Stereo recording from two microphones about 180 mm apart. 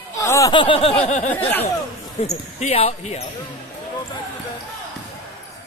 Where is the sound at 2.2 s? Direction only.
35° left (ahead or behind).